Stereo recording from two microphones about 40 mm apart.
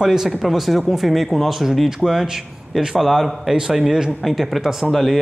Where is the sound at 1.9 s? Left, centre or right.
Centre.